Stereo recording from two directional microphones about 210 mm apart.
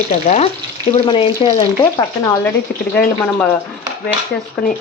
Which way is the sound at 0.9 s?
25° left (ahead or behind).